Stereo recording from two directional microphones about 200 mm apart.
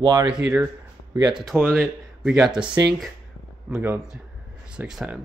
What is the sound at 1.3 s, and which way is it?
A man's voice, 5° right (ahead or behind).